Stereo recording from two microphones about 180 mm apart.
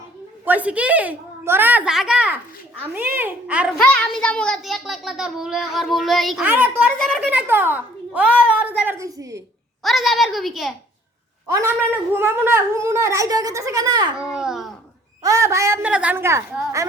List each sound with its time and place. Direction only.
0.4 s a child's voice: 10° right (ahead or behind)
3.8 s a child's voice: 5° left (ahead or behind); by 9.4 s 20° right (ahead or behind)
9.8 s a child's voice: centre (ahead or behind)
12.1 s a child's voice: 15° right (ahead or behind)
14.2 s a child's voice: 5° right (ahead or behind)
15.2 s a child's voice: 15° right (ahead or behind)